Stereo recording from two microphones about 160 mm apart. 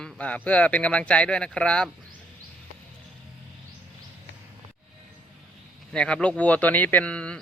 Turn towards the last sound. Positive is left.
turn(degrees=5)  # may be behind; listen again after turning